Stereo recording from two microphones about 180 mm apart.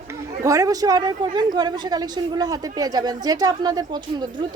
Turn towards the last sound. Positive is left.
turn(degrees=-25)  # may be behind; listen again after turning